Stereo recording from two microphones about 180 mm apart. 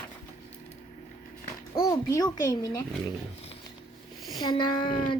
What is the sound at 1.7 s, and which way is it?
Speech, 20° left (ahead or behind).